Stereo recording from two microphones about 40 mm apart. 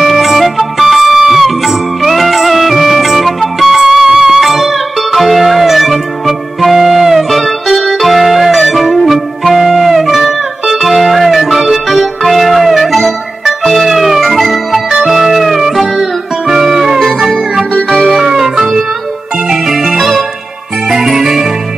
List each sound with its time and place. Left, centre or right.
0.0 s music: centre
14.9 s music: centre
15.1 s music: centre